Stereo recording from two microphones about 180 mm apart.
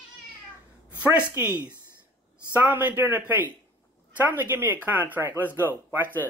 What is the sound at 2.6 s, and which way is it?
Speech, 10° right (ahead or behind).